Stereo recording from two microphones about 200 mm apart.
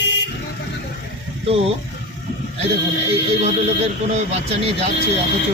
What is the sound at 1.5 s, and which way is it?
Speech, 30° right (ahead or behind).